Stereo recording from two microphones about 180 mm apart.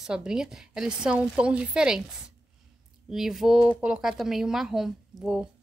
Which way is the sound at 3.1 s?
Centre (ahead or behind).